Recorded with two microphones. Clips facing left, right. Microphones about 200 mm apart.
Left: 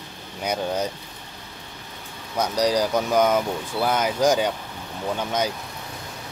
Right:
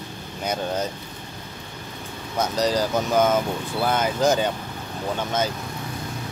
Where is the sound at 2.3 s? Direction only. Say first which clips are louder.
Left 1 dB; 10° left (ahead or behind).